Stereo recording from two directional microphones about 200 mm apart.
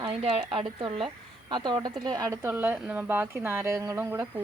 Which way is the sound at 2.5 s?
10° right (ahead or behind).